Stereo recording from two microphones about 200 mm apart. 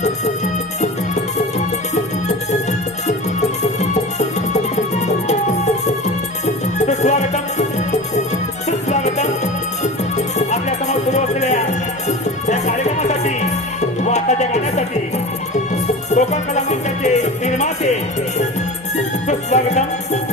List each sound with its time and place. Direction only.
0.8 s music: 35° left (ahead or behind)
3.6 s music: 35° left (ahead or behind)
8.9 s music: 35° left (ahead or behind)
16.0 s music: 35° left (ahead or behind)
19.3 s music: 35° left (ahead or behind)